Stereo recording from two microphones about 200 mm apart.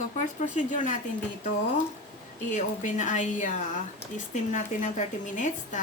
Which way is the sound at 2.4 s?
40° left (ahead or behind).